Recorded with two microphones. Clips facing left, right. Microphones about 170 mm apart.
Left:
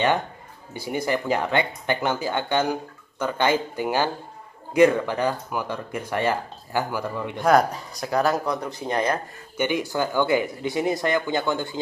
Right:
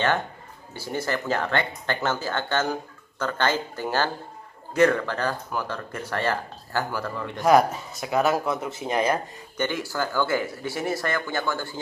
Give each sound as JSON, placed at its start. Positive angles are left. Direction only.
{"t": 0.7, "sound": "speech", "side_deg": 15}
{"t": 7.4, "sound": "speech", "side_deg": -5}
{"t": 9.6, "sound": "speech", "side_deg": 15}